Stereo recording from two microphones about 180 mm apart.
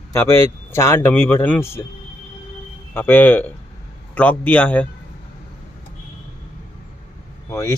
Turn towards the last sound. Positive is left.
turn(degrees=15)  # may be behind; listen again after turning